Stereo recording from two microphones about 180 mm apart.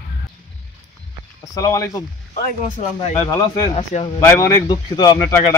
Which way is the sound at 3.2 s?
20° left (ahead or behind).